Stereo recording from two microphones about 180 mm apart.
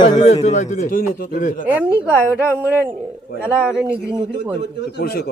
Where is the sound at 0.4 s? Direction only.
40° left (ahead or behind).